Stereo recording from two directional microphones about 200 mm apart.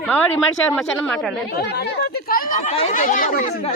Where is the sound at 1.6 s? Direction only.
55° left (ahead or behind).